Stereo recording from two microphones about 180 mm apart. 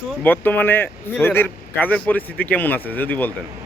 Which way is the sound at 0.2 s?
10° left (ahead or behind).